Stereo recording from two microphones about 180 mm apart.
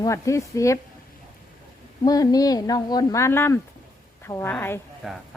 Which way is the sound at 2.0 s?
20° left (ahead or behind).